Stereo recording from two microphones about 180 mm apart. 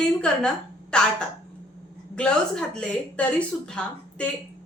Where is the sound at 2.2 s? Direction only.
5° left (ahead or behind).